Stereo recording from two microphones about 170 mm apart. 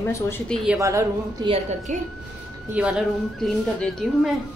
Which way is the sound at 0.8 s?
20° right (ahead or behind).